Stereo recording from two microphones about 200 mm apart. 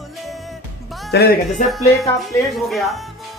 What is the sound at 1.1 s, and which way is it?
Speech, 50° left (ahead or behind).